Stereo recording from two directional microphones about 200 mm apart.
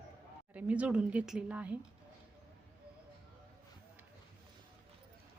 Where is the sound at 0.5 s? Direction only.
5° right (ahead or behind).